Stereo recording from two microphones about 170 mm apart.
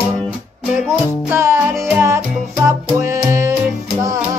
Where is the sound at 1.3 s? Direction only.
15° right (ahead or behind).